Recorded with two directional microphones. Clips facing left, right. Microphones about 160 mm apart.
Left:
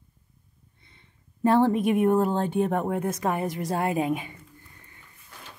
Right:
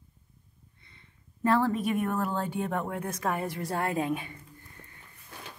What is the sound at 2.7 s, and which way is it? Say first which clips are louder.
A woman's voice: left 6 dB; 15° left (ahead or behind).